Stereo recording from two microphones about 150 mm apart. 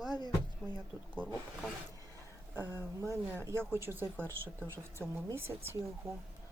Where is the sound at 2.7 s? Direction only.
15° right (ahead or behind).